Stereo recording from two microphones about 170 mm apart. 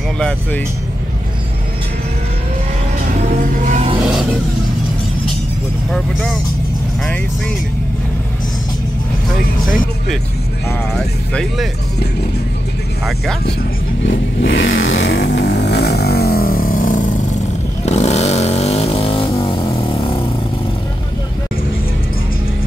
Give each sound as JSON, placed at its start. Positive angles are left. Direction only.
{"t": 5.9, "sound": "speech", "side_deg": 0}
{"t": 10.9, "sound": "speech", "side_deg": 5}
{"t": 14.0, "sound": "vehicle", "side_deg": 90}
{"t": 17.8, "sound": "vehicle", "side_deg": 40}